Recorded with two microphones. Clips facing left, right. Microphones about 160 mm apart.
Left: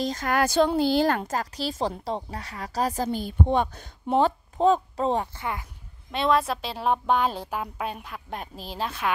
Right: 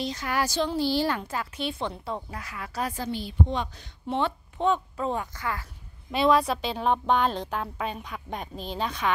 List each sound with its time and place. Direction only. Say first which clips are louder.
0.0 s a sound: left 4 dB; 45° left (ahead or behind)
1.0 s speech: left 4 dB; 45° left (ahead or behind); by 5.7 s 20° left (ahead or behind)
6.1 s a woman's voice: right 1 dB; centre (ahead or behind)